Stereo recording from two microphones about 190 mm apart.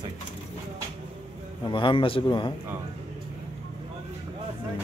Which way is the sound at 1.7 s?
25° left (ahead or behind).